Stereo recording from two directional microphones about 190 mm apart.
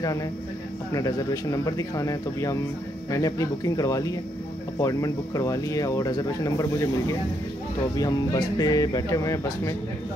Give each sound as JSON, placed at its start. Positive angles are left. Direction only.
{"t": 0.9, "sound": "speech", "side_deg": 20}
{"t": 8.0, "sound": "speech", "side_deg": 20}